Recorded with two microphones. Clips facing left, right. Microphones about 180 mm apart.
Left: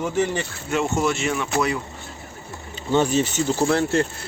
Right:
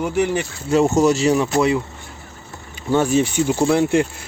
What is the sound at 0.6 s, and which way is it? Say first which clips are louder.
Speech: right 7 dB; 35° right (ahead or behind).